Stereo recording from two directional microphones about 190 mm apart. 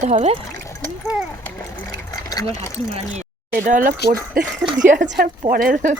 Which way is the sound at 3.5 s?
45° right (ahead or behind).